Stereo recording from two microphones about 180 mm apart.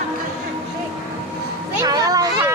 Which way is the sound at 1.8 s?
20° right (ahead or behind).